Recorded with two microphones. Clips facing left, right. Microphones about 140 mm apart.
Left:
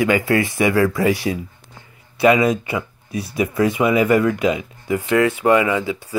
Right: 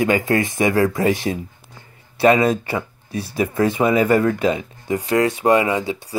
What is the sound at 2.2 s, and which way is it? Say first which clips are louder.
Speech: even; 30° right (ahead or behind).